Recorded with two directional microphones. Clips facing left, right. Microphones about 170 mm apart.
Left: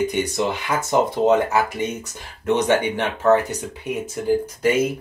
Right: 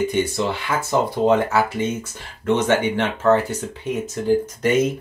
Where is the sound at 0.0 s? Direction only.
15° left (ahead or behind).